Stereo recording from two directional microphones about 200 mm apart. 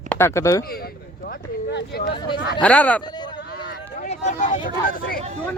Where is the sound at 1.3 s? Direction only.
55° left (ahead or behind).